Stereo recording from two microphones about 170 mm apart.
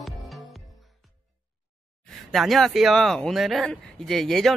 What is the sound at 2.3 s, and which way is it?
Speech, centre (ahead or behind).